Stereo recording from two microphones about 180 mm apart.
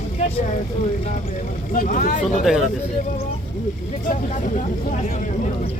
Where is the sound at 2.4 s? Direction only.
Centre (ahead or behind).